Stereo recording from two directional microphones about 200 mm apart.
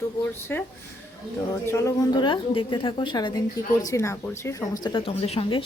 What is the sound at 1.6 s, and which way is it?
A woman's voice, 15° left (ahead or behind).